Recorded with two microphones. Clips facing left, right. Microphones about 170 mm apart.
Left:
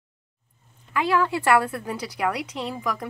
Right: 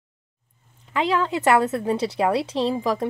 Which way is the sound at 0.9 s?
20° right (ahead or behind).